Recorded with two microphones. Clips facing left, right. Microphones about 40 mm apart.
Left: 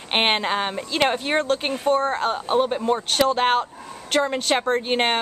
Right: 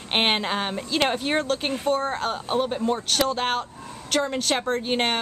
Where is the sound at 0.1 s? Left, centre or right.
Centre.